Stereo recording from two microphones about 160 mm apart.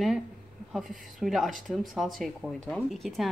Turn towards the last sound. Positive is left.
turn(degrees=0)  # may be behind; listen again after turning